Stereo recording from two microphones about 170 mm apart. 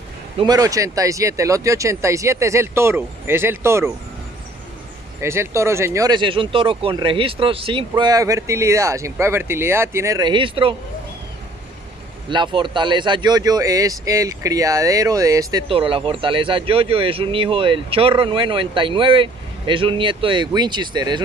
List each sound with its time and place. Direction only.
0.4 s speech: 20° right (ahead or behind)
5.2 s speech: 15° right (ahead or behind)
12.3 s speech: 30° right (ahead or behind)
15.7 s speech: 30° right (ahead or behind)